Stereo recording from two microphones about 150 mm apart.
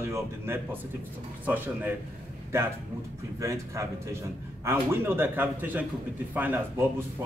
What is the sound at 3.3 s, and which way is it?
A man's voice, 20° right (ahead or behind).